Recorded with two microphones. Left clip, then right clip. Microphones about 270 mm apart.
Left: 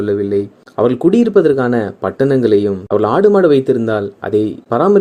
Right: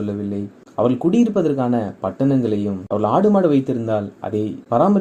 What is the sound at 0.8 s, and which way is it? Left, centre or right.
Speech, left.